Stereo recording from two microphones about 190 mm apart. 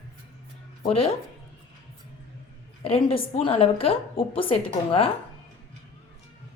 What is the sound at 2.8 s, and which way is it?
A woman's voice, 30° left (ahead or behind).